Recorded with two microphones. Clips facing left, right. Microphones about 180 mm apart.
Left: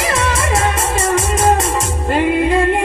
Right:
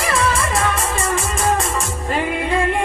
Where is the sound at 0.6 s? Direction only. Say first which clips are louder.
Left 4 dB; 40° left (ahead or behind).